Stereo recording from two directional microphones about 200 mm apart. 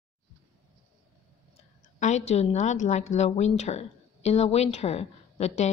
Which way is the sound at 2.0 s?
35° left (ahead or behind).